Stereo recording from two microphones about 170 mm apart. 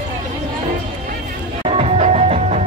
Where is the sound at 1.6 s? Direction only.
35° right (ahead or behind).